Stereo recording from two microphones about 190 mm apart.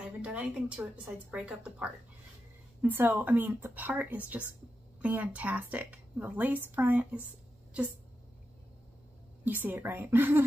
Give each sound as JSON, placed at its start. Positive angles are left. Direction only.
{"t": 0.2, "sound": "a woman's voice", "side_deg": -5}
{"t": 9.4, "sound": "a woman's voice", "side_deg": -10}